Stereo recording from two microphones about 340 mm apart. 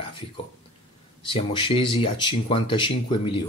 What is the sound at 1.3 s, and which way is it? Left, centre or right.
Speech, centre.